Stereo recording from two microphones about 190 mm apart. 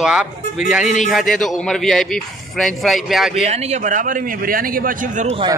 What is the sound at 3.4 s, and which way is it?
A man's voice, 35° right (ahead or behind).